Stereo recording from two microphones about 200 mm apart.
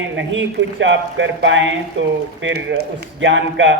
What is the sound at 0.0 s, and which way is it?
Speech, 65° right (ahead or behind).